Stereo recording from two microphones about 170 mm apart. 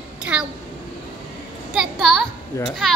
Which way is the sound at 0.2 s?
5° right (ahead or behind).